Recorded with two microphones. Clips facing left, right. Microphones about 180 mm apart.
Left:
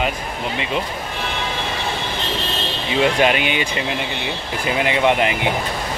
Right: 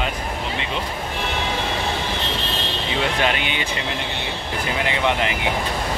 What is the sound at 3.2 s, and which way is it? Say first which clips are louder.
Speech: left 5 dB; 15° left (ahead or behind).